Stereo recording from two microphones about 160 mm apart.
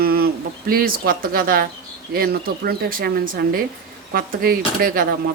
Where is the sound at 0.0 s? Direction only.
70° right (ahead or behind).